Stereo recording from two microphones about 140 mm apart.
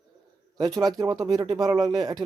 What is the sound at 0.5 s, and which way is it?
Speech, 25° right (ahead or behind).